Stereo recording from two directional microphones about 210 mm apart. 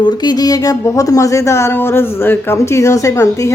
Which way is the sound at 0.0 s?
20° left (ahead or behind).